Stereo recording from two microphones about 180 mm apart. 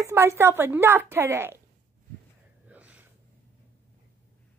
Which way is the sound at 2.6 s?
10° right (ahead or behind).